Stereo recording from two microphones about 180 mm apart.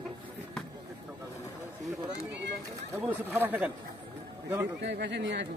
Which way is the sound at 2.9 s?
10° right (ahead or behind).